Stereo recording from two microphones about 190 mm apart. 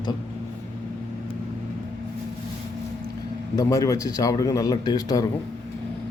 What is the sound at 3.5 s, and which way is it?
Speech, 15° left (ahead or behind).